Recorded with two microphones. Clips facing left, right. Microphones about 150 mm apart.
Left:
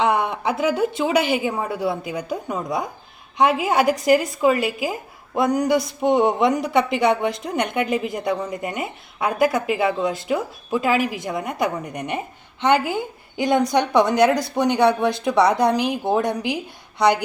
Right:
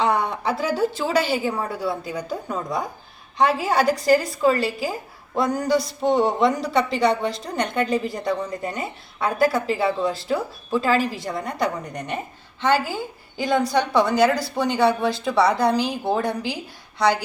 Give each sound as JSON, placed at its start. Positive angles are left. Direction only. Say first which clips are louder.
{"t": 0.0, "sound": "a woman's voice", "louder": "left 1 dB", "side_deg": 20}